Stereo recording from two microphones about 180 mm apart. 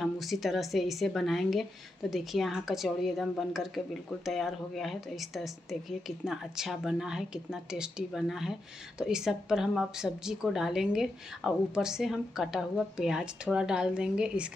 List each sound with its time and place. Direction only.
0.0 s a woman's voice: centre (ahead or behind)